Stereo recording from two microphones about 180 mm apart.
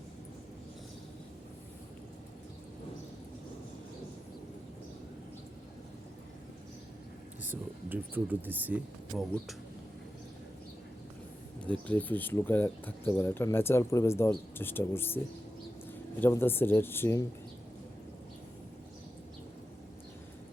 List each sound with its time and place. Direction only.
7.4 s speech: 10° right (ahead or behind)
11.9 s speech: 10° left (ahead or behind)
16.2 s speech: 10° left (ahead or behind)